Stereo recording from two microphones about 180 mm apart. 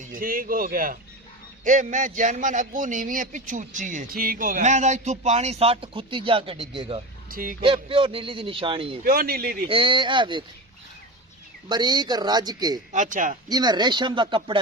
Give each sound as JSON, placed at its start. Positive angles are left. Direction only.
{"t": 0.0, "sound": "a man's voice", "side_deg": -50}
{"t": 7.3, "sound": "speech", "side_deg": -50}
{"t": 7.6, "sound": "a man's voice", "side_deg": -30}
{"t": 9.0, "sound": "speech", "side_deg": -55}
{"t": 9.6, "sound": "a man's voice", "side_deg": -30}
{"t": 11.7, "sound": "a man's voice", "side_deg": -25}
{"t": 12.9, "sound": "a man's voice", "side_deg": -45}
{"t": 13.5, "sound": "a man's voice", "side_deg": -25}